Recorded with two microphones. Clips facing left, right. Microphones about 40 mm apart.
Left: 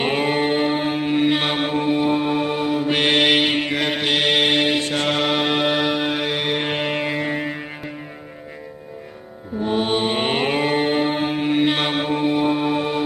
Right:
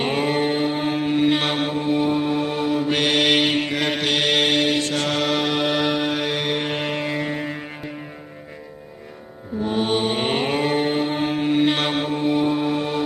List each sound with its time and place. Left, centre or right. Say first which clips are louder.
0.0 s mantra: left 1 dB; centre
1.7 s music: left 2 dB; left
2.0 s mantra: left 2 dB; centre
3.3 s mantra: left 1 dB; centre
5.8 s music: left 1 dB; centre
9.6 s mantra: left 1 dB; centre
12.0 s music: left 2 dB; left